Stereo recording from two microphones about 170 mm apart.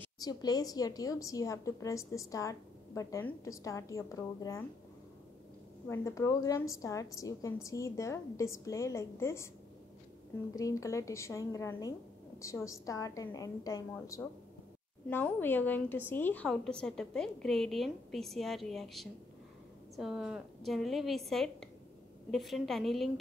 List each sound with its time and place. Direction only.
0.2 s a woman's voice: 20° left (ahead or behind)
5.9 s a woman's voice: 15° left (ahead or behind)
10.5 s a woman's voice: 20° left (ahead or behind); by 23.1 s centre (ahead or behind)